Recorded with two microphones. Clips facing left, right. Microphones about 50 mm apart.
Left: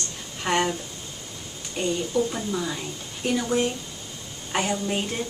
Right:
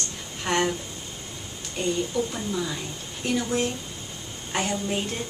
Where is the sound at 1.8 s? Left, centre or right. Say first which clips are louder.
Left 1 dB; centre.